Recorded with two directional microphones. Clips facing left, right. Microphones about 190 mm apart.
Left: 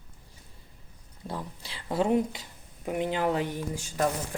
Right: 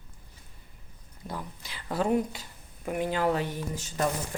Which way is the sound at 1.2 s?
30° left (ahead or behind).